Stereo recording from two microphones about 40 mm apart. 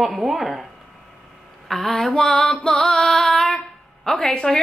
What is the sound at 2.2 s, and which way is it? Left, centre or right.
A woman's voice, centre.